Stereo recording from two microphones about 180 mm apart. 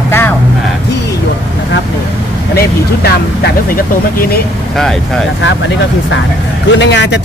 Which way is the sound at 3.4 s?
55° left (ahead or behind).